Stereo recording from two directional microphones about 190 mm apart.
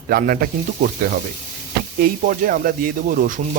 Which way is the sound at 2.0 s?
50° right (ahead or behind).